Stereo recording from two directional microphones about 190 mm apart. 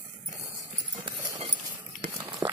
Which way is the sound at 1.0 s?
20° right (ahead or behind).